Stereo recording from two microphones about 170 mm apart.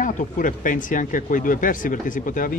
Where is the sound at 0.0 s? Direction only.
50° left (ahead or behind).